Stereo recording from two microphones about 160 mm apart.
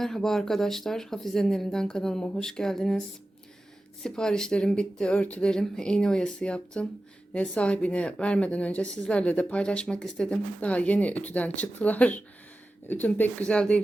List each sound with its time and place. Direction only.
0.0 s speech: 5° left (ahead or behind)
4.0 s speech: 5° left (ahead or behind)